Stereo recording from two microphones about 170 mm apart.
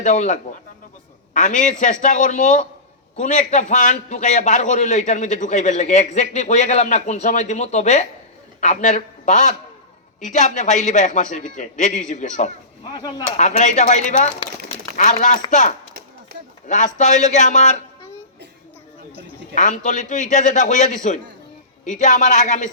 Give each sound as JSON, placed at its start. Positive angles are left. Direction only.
{"t": 0.0, "sound": "a man's voice", "side_deg": 45}
{"t": 19.5, "sound": "a man's voice", "side_deg": 45}